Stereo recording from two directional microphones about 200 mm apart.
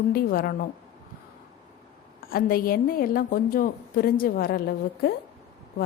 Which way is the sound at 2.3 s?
45° left (ahead or behind).